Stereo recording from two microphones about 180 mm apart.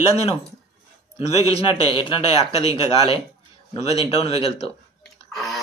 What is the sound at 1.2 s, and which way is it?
A man's voice, 30° left (ahead or behind).